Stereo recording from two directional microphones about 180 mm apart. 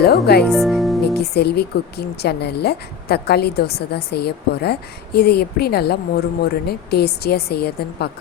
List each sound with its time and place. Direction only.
0.4 s speech: centre (ahead or behind)
1.1 s speech: 65° left (ahead or behind)